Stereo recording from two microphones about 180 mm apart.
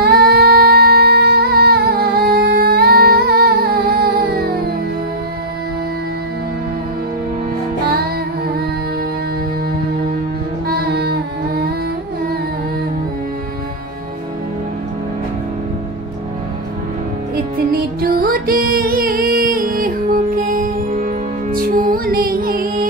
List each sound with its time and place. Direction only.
0.0 s music: 60° right (ahead or behind)
10.7 s music: 60° right (ahead or behind)
17.6 s music: 55° right (ahead or behind)